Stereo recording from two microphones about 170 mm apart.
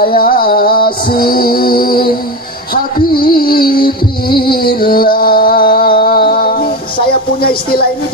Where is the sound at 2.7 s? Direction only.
60° left (ahead or behind).